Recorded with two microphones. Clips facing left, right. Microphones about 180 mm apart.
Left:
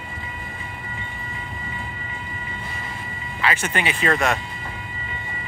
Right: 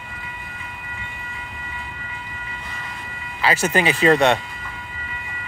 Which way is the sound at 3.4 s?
35° right (ahead or behind).